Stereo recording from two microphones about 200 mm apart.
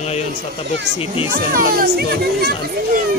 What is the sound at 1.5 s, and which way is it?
Speech, 45° right (ahead or behind).